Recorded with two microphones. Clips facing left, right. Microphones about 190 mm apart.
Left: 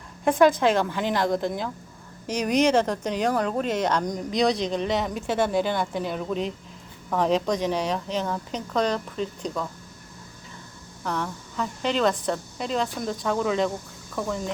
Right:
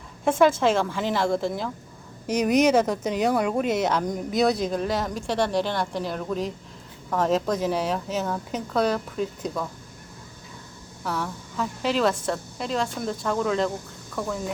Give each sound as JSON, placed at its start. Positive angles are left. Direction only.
{"t": 0.3, "sound": "a woman's voice", "side_deg": 0}
{"t": 11.0, "sound": "speech", "side_deg": -5}